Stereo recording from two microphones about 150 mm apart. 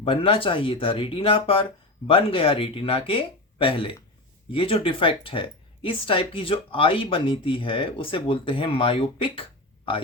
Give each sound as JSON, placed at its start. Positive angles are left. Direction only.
{"t": 0.0, "sound": "speech", "side_deg": 35}